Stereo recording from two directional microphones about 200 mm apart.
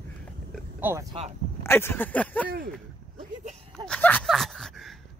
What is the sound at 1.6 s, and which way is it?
Speech, 10° left (ahead or behind).